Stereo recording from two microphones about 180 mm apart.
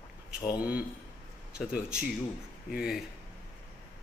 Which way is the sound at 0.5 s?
10° right (ahead or behind).